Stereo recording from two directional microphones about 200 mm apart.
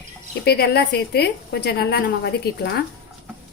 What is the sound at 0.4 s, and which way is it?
A woman's voice, 50° left (ahead or behind).